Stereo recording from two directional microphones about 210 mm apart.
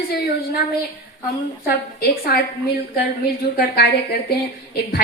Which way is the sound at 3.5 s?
50° left (ahead or behind).